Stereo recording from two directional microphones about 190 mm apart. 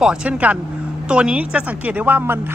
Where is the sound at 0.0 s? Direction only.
5° right (ahead or behind).